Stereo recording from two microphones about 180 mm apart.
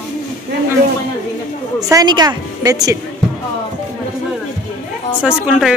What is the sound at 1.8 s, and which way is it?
A woman's voice, 20° right (ahead or behind).